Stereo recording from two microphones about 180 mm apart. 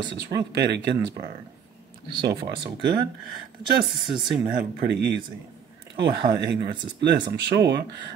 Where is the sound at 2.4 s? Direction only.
25° right (ahead or behind).